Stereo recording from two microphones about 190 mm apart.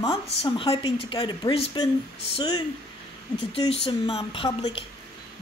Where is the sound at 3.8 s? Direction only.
25° left (ahead or behind).